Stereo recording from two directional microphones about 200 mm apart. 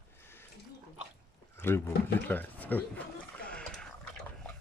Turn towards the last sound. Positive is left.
turn(degrees=5)  # may be behind; listen again after turning